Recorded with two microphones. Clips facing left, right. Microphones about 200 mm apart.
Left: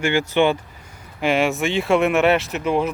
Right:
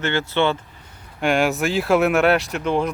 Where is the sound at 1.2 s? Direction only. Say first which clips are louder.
Even; centre (ahead or behind).